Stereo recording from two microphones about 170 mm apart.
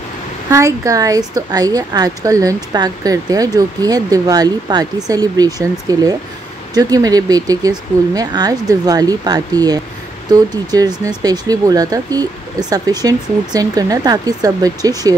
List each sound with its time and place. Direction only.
0.5 s a woman's voice: 20° right (ahead or behind)